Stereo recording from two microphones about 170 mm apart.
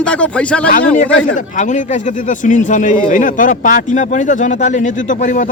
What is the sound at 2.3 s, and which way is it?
A man's voice, 50° left (ahead or behind).